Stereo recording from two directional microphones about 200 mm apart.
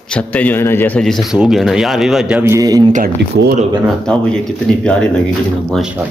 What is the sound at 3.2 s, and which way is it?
Speech, 60° right (ahead or behind).